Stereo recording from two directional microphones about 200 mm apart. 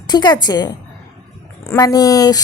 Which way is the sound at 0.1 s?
20° left (ahead or behind).